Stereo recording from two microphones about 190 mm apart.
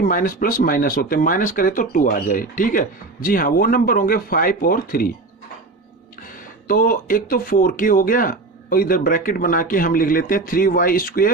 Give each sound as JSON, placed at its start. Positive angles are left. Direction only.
{"t": 0.0, "sound": "speech", "side_deg": 45}
{"t": 6.2, "sound": "speech", "side_deg": 45}